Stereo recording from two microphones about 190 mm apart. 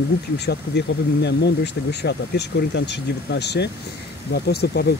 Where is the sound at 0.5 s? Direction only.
60° left (ahead or behind).